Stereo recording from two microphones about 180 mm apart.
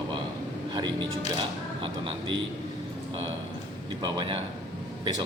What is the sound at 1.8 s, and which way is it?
Speech, 30° right (ahead or behind).